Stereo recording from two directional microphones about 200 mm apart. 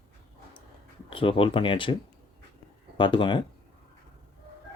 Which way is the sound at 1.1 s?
25° left (ahead or behind).